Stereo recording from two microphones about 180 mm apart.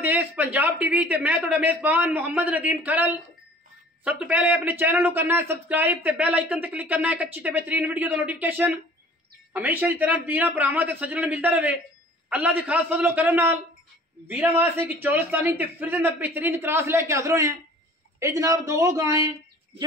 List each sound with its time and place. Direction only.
0.0 s a man's voice: 10° right (ahead or behind)